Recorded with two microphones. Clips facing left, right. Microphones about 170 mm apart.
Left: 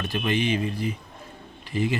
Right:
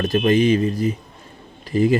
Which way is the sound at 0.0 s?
40° right (ahead or behind).